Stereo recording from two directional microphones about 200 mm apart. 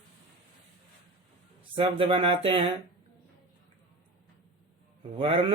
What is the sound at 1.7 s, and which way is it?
Speech, 25° right (ahead or behind).